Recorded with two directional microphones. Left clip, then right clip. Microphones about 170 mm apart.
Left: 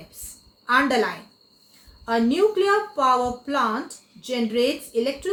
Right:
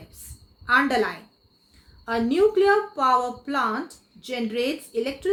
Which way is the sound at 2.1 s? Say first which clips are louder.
Left 1 dB; 35° right (ahead or behind).